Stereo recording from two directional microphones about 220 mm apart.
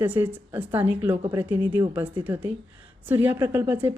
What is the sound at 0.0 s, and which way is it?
A woman's voice, 10° right (ahead or behind).